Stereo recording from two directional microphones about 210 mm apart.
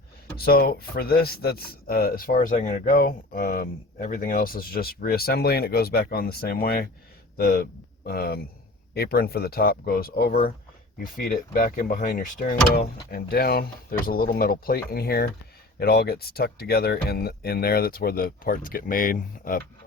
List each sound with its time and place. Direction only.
0.3 s speech: 45° left (ahead or behind)